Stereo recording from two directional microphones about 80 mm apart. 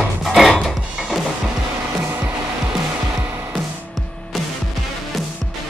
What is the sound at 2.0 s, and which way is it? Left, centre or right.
Music, right.